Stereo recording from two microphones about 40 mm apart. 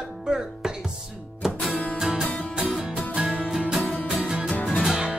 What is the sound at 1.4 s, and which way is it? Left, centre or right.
Music, centre.